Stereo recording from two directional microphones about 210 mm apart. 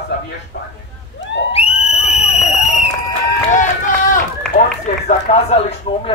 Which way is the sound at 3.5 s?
35° left (ahead or behind).